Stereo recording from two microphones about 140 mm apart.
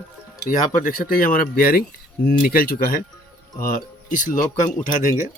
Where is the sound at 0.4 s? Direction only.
80° left.